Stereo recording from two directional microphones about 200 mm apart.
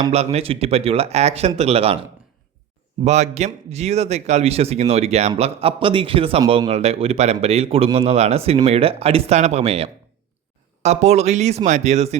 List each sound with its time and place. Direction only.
0.1 s a man's voice: 30° right (ahead or behind)
3.0 s a man's voice: 35° right (ahead or behind)